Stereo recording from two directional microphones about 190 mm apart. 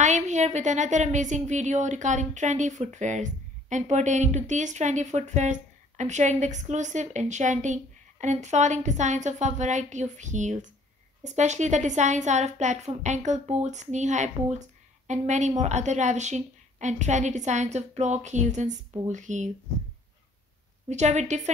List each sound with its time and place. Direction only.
0.0 s a woman's voice: 40° right (ahead or behind)
20.9 s a woman's voice: 35° right (ahead or behind)